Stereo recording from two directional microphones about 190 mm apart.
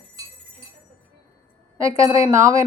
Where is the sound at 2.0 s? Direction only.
15° right (ahead or behind).